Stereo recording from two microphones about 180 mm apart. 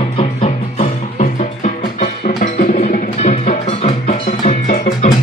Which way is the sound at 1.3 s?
45° left (ahead or behind).